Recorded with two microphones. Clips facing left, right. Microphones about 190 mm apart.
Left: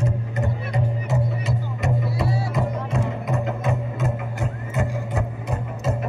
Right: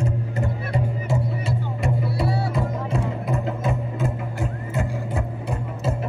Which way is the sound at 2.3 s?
60° right (ahead or behind).